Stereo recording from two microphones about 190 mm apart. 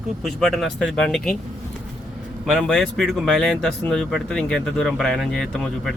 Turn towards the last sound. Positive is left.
turn(degrees=0)  # may be behind; listen again after turning